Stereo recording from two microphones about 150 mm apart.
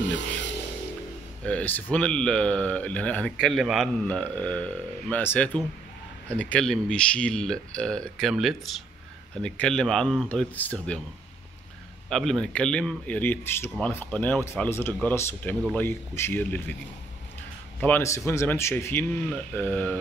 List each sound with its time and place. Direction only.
1.4 s speech: 10° left (ahead or behind)
3.3 s speech: centre (ahead or behind)
12.1 s speech: 5° left (ahead or behind)
17.7 s speech: 15° left (ahead or behind)